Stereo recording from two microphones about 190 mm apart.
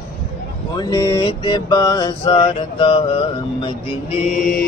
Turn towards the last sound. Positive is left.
turn(degrees=45)  # may be behind; listen again after turning